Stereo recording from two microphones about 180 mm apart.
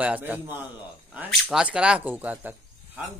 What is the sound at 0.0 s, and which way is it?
Speech, 10° right (ahead or behind).